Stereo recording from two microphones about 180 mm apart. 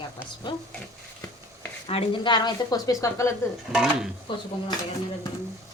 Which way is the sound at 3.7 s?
Centre (ahead or behind).